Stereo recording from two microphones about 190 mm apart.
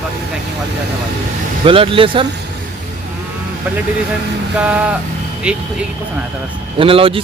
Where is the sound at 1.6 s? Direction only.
30° right (ahead or behind).